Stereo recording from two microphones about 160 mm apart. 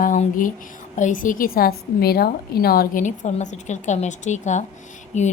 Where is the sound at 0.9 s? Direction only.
55° left (ahead or behind).